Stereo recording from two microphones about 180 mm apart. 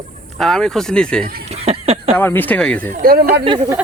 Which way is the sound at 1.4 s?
35° right (ahead or behind).